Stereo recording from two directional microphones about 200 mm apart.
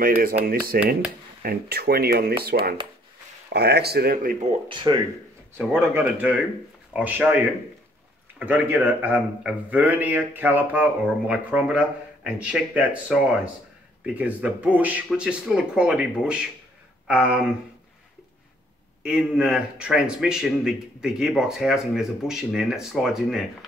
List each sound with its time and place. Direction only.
0.0 s speech: 45° right (ahead or behind)
4.5 s speech: 25° right (ahead or behind)
5.7 s a man's voice: 10° right (ahead or behind)
19.0 s speech: 5° right (ahead or behind)